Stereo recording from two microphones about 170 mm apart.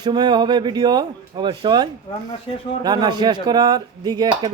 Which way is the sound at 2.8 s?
25° right (ahead or behind).